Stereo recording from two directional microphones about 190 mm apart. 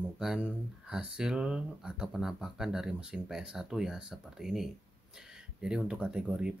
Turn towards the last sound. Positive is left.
turn(degrees=-5)  # may be behind; listen again after turning